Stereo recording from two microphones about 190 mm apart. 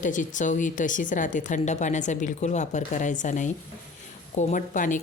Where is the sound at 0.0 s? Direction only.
40° left (ahead or behind).